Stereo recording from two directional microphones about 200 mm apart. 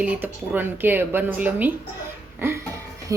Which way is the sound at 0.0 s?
10° right (ahead or behind).